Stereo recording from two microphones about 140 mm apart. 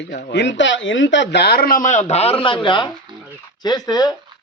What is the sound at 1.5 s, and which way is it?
Speech, 90° left.